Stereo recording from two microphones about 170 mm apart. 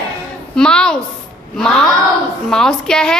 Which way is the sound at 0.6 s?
5° left (ahead or behind).